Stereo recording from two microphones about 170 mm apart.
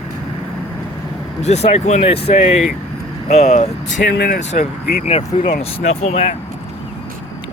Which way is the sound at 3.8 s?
90° left.